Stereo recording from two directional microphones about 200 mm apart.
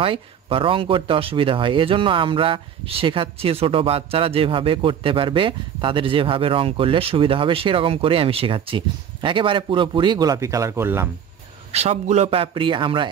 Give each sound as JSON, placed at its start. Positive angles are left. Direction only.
{"t": 0.0, "sound": "speech", "side_deg": -25}
{"t": 11.7, "sound": "speech", "side_deg": -30}